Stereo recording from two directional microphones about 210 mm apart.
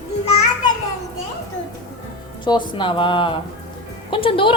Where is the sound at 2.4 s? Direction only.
20° left (ahead or behind).